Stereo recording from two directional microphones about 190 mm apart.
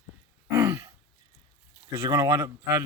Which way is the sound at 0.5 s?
15° right (ahead or behind).